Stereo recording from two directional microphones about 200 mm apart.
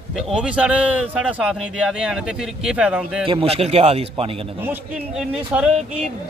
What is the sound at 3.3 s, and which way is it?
A man's voice, 30° right (ahead or behind).